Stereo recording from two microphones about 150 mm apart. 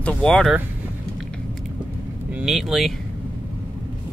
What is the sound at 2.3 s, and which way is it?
Speech, 5° right (ahead or behind).